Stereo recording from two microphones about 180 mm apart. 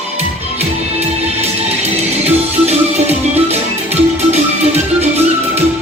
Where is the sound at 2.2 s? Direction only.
35° right (ahead or behind).